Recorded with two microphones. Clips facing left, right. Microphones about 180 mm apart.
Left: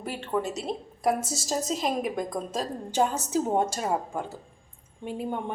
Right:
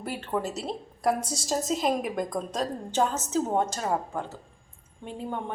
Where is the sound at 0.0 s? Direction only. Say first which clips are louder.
Left 1 dB; centre (ahead or behind).